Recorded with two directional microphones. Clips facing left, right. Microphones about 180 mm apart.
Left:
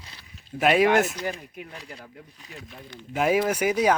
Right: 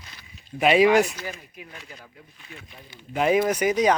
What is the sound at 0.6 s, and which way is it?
Speech, centre (ahead or behind).